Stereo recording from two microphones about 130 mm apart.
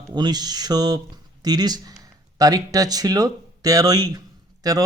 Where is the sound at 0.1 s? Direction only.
35° right (ahead or behind).